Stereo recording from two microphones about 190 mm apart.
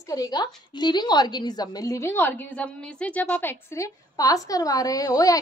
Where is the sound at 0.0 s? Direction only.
20° left (ahead or behind).